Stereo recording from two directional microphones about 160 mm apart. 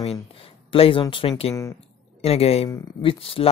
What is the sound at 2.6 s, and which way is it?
Speech, 30° left (ahead or behind).